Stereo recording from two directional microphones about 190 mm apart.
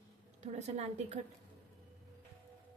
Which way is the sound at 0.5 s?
35° right (ahead or behind).